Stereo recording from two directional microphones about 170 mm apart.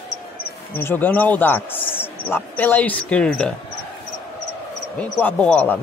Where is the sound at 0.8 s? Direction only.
10° left (ahead or behind).